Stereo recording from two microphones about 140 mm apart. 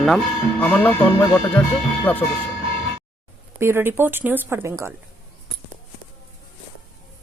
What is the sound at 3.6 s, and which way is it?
Speech, 15° right (ahead or behind).